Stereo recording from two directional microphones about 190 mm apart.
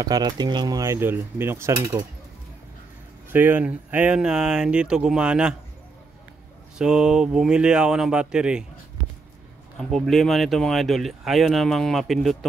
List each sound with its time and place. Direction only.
0.0 s cutlery: 20° right (ahead or behind)
3.3 s speech: 10° right (ahead or behind)
6.8 s speech: 5° right (ahead or behind)
9.8 s speech: centre (ahead or behind)